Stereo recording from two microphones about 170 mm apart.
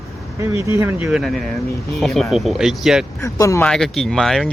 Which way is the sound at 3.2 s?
15° left (ahead or behind).